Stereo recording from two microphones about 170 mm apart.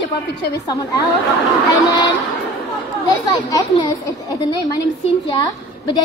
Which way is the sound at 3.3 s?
25° left (ahead or behind).